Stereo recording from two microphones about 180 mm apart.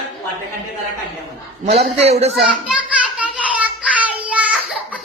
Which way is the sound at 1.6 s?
35° right (ahead or behind).